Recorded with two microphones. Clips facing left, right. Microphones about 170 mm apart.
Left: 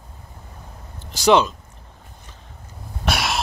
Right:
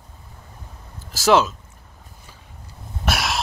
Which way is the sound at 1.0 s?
Centre (ahead or behind).